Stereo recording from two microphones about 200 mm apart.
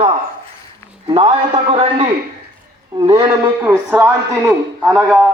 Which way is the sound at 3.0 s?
15° right (ahead or behind).